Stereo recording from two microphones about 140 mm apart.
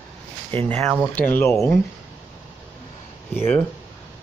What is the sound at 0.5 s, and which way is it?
Speech, 15° left (ahead or behind).